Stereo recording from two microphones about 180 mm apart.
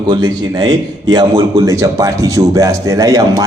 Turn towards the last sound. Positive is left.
turn(degrees=-20)  # may be behind; listen again after turning